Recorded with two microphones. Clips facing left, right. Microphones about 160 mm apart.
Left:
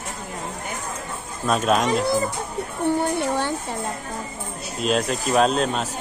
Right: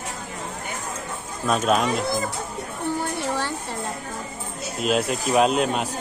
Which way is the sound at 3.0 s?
15° left (ahead or behind).